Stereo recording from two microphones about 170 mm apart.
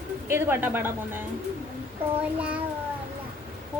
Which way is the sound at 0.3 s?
15° right (ahead or behind).